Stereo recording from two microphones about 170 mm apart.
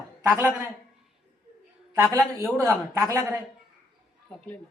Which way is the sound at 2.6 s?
15° right (ahead or behind).